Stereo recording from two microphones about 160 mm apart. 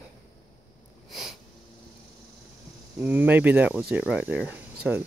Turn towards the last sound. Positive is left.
turn(degrees=-10)  # may be behind; listen again after turning